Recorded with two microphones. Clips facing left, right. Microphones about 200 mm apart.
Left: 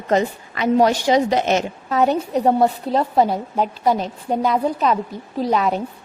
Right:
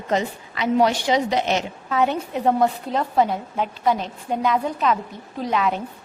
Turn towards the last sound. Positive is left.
turn(degrees=40)  # may be behind; listen again after turning